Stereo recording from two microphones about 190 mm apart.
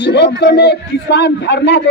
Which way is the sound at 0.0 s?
65° left (ahead or behind).